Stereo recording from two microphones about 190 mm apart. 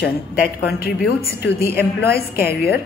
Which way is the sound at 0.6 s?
55° left (ahead or behind).